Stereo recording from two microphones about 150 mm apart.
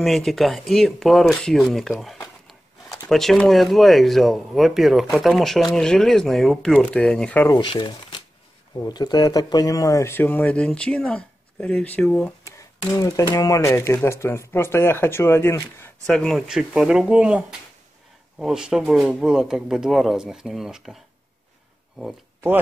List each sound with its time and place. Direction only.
0.0 s speech: centre (ahead or behind)
7.4 s speech: 30° left (ahead or behind); by 12.4 s 10° left (ahead or behind)
12.8 s speech: 20° left (ahead or behind)
16.1 s speech: 5° left (ahead or behind)